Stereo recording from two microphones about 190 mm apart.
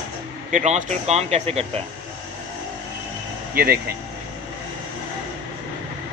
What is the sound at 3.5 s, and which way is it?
Speech, 55° right (ahead or behind).